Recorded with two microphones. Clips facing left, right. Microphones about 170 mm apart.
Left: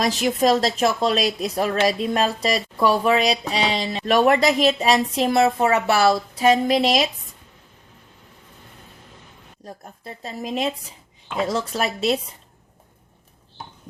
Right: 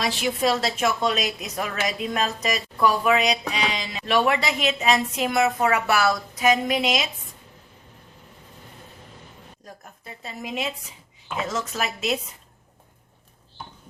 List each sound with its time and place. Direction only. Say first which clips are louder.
0.0 s a woman's voice: left 4 dB; 45° left (ahead or behind)
4.0 s a woman's voice: left 5 dB; 40° left (ahead or behind)
9.6 s a woman's voice: left 6 dB; 35° left (ahead or behind)